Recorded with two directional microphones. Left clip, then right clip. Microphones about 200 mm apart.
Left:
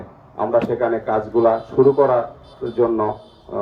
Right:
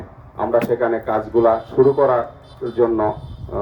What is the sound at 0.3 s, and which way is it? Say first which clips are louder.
Speech: right 1 dB; 40° right (ahead or behind).